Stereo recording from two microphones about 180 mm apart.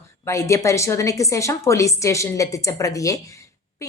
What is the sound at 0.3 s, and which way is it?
A woman's voice, 15° left (ahead or behind).